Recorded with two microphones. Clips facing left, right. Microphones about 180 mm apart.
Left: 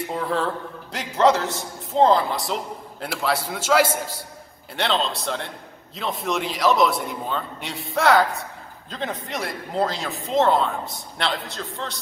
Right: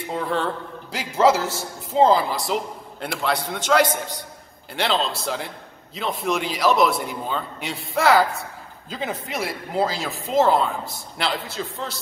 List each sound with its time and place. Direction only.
0.1 s a man's voice: centre (ahead or behind)